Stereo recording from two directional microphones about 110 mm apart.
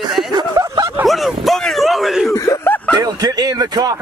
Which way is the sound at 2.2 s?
30° left (ahead or behind).